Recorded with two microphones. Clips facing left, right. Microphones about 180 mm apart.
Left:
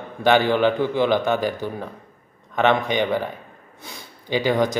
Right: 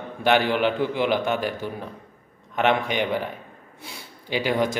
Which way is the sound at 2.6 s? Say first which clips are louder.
Left 3 dB; 5° right (ahead or behind).